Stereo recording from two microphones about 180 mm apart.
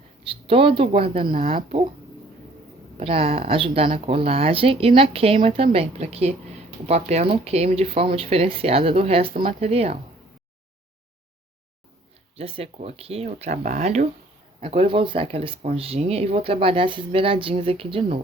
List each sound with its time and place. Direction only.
0.3 s speech: 30° right (ahead or behind)
3.0 s speech: 30° right (ahead or behind)
12.4 s speech: 30° right (ahead or behind)